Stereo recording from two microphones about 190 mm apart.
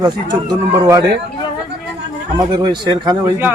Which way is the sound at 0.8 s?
20° right (ahead or behind).